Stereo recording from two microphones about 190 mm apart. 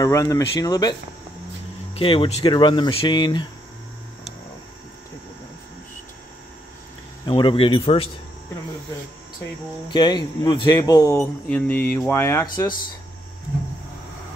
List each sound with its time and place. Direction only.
0.0 s speech: 15° left (ahead or behind)
2.0 s speech: 30° left (ahead or behind)
7.2 s speech: 25° left (ahead or behind)
9.8 s speech: 25° left (ahead or behind)
11.1 s speech: 5° left (ahead or behind)